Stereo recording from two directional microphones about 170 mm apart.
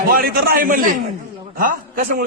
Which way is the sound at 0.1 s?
60° right (ahead or behind).